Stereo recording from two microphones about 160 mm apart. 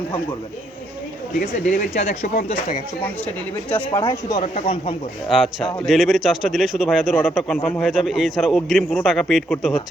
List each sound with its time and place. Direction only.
1.4 s speech: 60° left (ahead or behind)
4.1 s speech: 25° left (ahead or behind)
5.3 s a man's voice: centre (ahead or behind)